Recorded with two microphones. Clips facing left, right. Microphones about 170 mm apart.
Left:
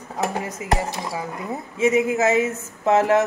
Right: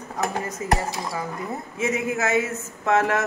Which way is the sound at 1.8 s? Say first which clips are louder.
Left 6 dB; 20° left (ahead or behind).